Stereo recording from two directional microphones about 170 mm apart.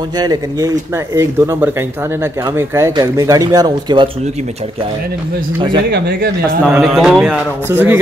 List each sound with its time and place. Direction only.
0.2 s speech: 20° right (ahead or behind)
5.9 s speech: 75° right (ahead or behind)
6.7 s speech: centre (ahead or behind)
7.7 s speech: 10° right (ahead or behind)